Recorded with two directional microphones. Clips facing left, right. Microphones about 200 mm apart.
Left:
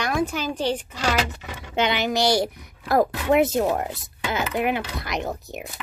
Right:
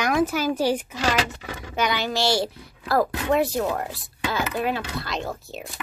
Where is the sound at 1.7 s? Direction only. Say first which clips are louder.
Left 2 dB; 25° left (ahead or behind).